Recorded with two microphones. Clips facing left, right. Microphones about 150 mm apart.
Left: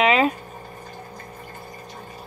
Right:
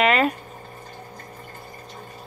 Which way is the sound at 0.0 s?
Centre (ahead or behind).